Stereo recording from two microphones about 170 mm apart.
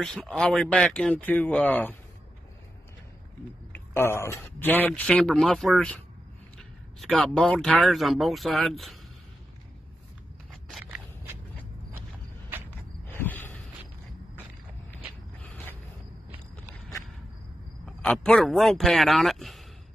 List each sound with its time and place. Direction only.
0.0 s a man's voice: centre (ahead or behind)
3.7 s a man's voice: 10° left (ahead or behind)
7.0 s speech: centre (ahead or behind)
10.5 s biting: centre (ahead or behind)
13.1 s a sound: 10° left (ahead or behind)
17.8 s speech: 5° left (ahead or behind)